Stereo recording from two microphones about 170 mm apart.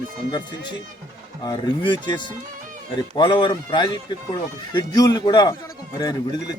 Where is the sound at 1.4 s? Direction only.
25° left (ahead or behind).